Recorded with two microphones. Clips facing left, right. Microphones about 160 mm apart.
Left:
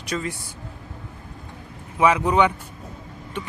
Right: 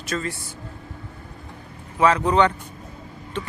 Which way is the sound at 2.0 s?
10° left (ahead or behind).